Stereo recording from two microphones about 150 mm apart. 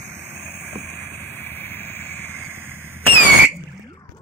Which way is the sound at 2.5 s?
15° right (ahead or behind).